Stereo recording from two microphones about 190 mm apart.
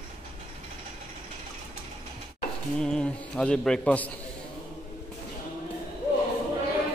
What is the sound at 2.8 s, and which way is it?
A man's voice, 5° left (ahead or behind).